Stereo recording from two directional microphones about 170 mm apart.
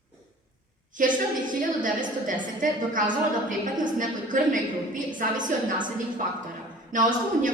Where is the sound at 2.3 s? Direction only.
50° right (ahead or behind).